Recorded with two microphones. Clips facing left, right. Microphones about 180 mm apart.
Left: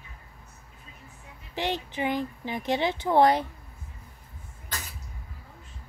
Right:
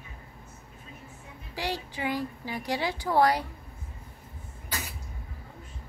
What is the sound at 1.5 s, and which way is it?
Speech, 20° left (ahead or behind).